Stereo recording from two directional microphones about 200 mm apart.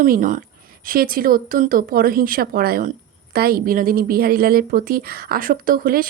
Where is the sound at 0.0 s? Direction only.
40° right (ahead or behind).